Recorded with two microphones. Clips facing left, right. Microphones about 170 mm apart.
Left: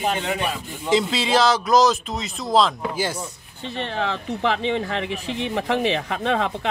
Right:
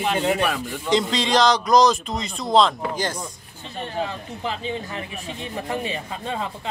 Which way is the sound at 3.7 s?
80° left.